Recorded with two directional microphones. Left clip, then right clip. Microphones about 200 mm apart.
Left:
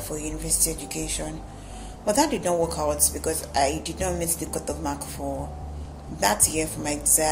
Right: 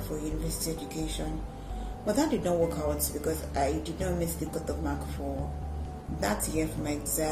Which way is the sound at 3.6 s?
20° right (ahead or behind).